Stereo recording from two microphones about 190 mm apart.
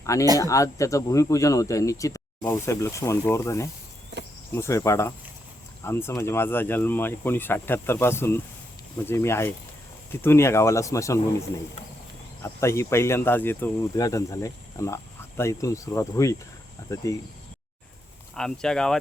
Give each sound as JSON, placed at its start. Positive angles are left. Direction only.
{"t": 0.0, "sound": "speech", "side_deg": 15}
{"t": 4.1, "sound": "cricket", "side_deg": -65}
{"t": 4.5, "sound": "speech", "side_deg": 15}
{"t": 12.4, "sound": "speech", "side_deg": 15}
{"t": 18.3, "sound": "speech", "side_deg": 5}